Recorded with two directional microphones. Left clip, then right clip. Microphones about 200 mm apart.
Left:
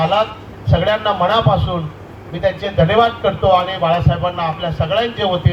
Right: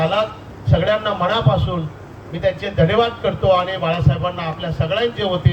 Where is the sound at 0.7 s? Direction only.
25° left (ahead or behind).